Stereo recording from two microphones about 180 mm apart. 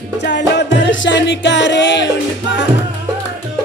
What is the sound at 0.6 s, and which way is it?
Music, 90° left.